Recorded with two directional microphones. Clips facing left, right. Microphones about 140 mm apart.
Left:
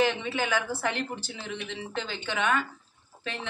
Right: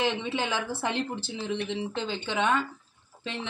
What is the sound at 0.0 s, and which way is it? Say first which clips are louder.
Speech: left 2 dB; 20° right (ahead or behind).